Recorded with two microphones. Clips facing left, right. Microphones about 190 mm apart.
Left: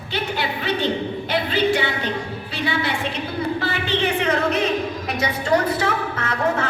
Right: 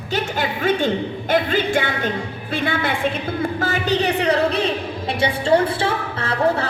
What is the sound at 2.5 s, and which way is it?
A woman's voice, 50° right (ahead or behind).